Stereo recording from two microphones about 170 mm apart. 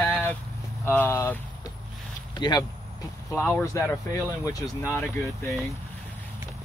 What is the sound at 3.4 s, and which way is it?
Speech, 10° left (ahead or behind).